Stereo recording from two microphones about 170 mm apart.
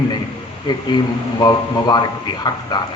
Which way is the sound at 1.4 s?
25° left (ahead or behind).